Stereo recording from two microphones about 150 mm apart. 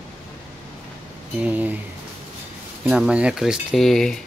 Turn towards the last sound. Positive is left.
turn(degrees=5)  # may be behind; listen again after turning